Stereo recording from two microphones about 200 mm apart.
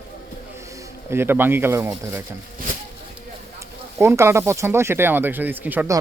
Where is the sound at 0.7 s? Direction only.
10° right (ahead or behind).